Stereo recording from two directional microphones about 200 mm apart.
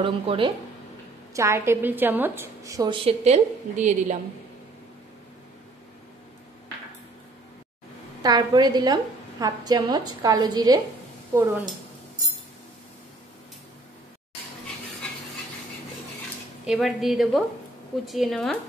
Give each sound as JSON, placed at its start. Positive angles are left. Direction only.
{"t": 0.0, "sound": "a woman's voice", "side_deg": -25}
{"t": 1.3, "sound": "a woman's voice", "side_deg": -15}
{"t": 3.1, "sound": "a woman's voice", "side_deg": -35}
{"t": 8.2, "sound": "a woman's voice", "side_deg": -20}
{"t": 16.6, "sound": "a woman's voice", "side_deg": 0}